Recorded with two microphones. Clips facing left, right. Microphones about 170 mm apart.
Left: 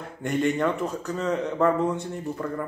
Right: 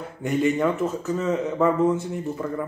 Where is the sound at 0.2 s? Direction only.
5° right (ahead or behind).